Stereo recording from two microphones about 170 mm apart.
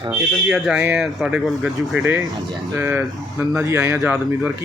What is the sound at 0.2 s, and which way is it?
Speech, centre (ahead or behind).